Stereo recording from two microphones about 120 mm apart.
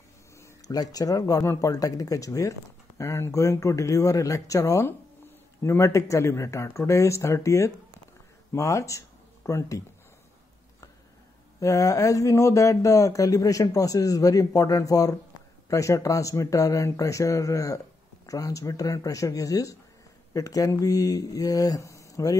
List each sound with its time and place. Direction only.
0.4 s speech: 30° left (ahead or behind)
11.6 s speech: 25° left (ahead or behind)